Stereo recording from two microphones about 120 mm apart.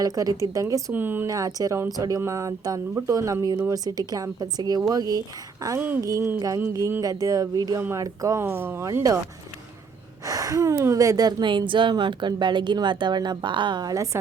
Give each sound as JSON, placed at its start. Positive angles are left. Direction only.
{"t": 0.0, "sound": "speech", "side_deg": -30}
{"t": 1.3, "sound": "speech", "side_deg": -30}
{"t": 7.8, "sound": "speech", "side_deg": -20}
{"t": 10.2, "sound": "speech", "side_deg": -30}